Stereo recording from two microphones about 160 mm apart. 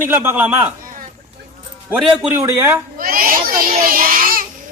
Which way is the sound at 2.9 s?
60° right (ahead or behind).